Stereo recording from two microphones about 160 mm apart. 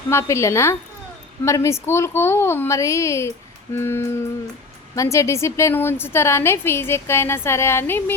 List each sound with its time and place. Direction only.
0.1 s a woman's voice: 15° left (ahead or behind)